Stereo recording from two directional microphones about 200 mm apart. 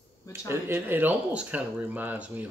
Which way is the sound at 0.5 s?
10° right (ahead or behind).